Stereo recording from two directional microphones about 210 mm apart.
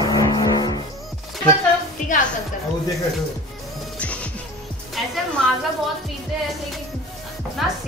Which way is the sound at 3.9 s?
5° left (ahead or behind).